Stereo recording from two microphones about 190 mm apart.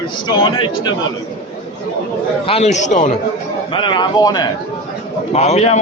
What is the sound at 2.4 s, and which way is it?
Speech, 35° left (ahead or behind).